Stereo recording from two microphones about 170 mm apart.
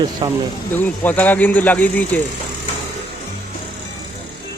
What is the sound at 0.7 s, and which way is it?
Speech, 10° left (ahead or behind).